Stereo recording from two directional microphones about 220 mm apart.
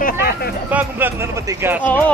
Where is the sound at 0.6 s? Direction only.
10° right (ahead or behind).